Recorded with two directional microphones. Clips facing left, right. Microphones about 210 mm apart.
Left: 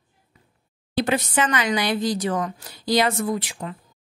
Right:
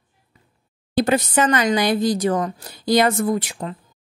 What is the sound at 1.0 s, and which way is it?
Speech, 40° right (ahead or behind).